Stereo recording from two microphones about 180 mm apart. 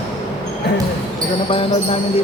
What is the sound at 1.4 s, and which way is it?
Speech, 30° left (ahead or behind).